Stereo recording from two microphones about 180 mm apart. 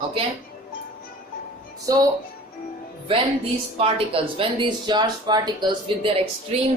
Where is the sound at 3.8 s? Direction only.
30° right (ahead or behind).